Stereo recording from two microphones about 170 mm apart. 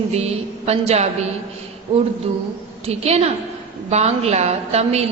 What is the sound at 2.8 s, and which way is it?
A woman's voice, 40° right (ahead or behind).